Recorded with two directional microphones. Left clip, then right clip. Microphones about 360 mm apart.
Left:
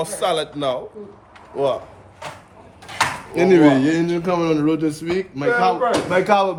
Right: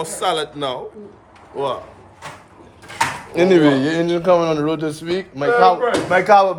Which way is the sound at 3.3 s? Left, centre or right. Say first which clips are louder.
Even; centre.